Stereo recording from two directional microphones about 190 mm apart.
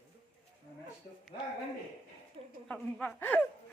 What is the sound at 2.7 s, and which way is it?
Speech, 10° left (ahead or behind).